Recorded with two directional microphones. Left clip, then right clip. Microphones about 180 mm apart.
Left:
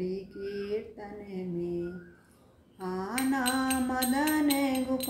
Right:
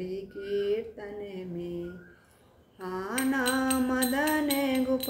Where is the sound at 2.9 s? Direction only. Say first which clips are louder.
Right 1 dB; 20° right (ahead or behind).